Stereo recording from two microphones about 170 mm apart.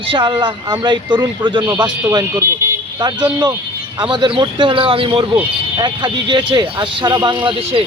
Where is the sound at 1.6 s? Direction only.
15° right (ahead or behind).